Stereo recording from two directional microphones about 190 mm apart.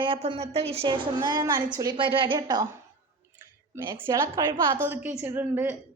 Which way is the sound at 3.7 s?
15° right (ahead or behind).